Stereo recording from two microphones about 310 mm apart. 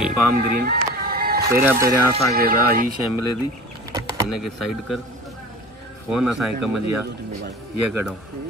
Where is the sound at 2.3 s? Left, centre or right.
Right.